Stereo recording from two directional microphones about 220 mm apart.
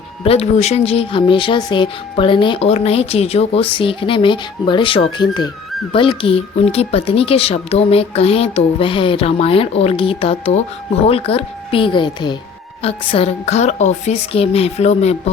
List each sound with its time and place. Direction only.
0.3 s speech: 30° left (ahead or behind)